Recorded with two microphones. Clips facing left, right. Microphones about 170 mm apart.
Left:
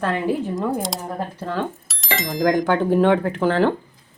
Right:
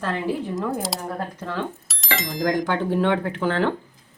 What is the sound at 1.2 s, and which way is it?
Speech, 30° left (ahead or behind).